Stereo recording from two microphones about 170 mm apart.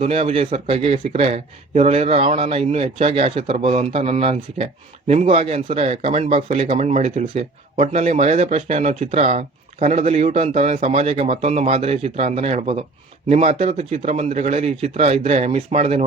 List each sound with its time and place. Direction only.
0.0 s a man's voice: 35° right (ahead or behind)